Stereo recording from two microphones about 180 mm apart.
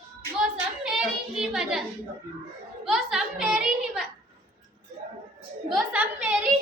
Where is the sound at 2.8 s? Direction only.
Centre (ahead or behind).